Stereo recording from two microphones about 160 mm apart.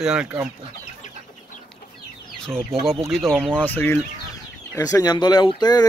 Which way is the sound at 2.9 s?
Centre (ahead or behind).